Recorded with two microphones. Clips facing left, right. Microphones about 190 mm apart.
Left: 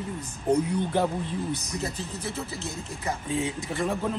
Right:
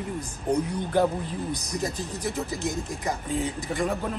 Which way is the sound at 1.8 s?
15° right (ahead or behind).